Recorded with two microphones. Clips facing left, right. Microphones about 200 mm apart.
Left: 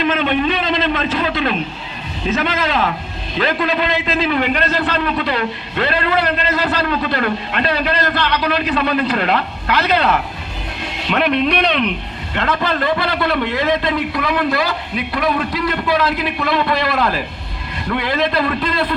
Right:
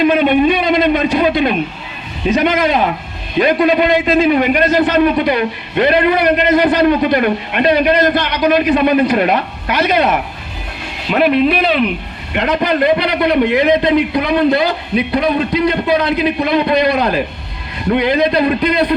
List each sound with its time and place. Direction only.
0.0 s a sound: 10° right (ahead or behind)
2.3 s a man's voice: 15° right (ahead or behind)
12.4 s a man's voice: 15° right (ahead or behind)